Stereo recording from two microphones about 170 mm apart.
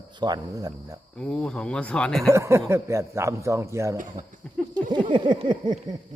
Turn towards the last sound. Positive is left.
turn(degrees=-25)  # may be behind; listen again after turning